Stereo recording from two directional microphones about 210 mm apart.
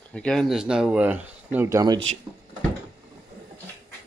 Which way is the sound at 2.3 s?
20° right (ahead or behind).